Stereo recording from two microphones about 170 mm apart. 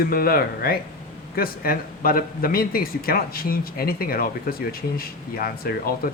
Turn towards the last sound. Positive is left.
turn(degrees=60)  # may be behind; listen again after turning